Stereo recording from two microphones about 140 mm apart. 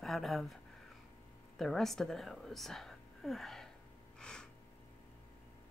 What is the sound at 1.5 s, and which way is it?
A woman's voice, 5° left (ahead or behind).